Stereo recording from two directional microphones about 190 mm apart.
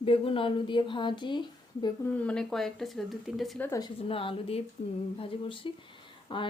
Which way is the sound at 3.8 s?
30° left (ahead or behind).